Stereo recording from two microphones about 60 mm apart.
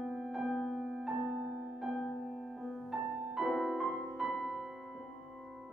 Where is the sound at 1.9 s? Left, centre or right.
Centre.